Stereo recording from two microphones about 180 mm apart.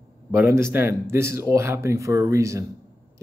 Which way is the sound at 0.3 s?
15° right (ahead or behind).